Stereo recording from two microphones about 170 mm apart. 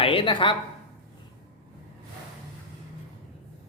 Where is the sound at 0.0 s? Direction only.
30° left (ahead or behind).